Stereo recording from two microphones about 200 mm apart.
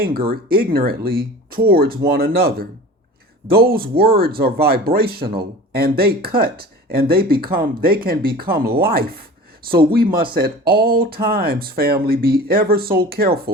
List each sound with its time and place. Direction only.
0.5 s speech: 45° right (ahead or behind)